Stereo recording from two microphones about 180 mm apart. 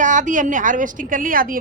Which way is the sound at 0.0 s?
45° right (ahead or behind).